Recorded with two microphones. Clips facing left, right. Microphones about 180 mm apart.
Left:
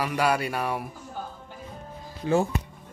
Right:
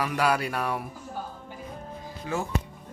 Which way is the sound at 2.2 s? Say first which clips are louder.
Left 8 dB; 30° left (ahead or behind).